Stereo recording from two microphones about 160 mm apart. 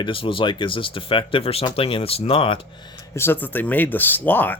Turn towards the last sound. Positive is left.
turn(degrees=10)  # may be behind; listen again after turning